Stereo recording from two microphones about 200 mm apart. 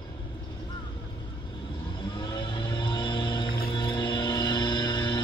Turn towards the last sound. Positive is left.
turn(degrees=20)  # may be behind; listen again after turning